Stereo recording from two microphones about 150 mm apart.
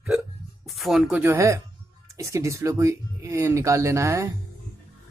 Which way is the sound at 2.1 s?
20° right (ahead or behind).